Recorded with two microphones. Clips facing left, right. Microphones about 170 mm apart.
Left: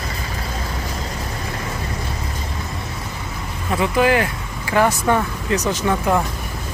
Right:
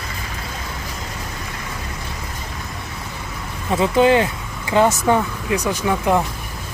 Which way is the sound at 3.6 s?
25° right (ahead or behind).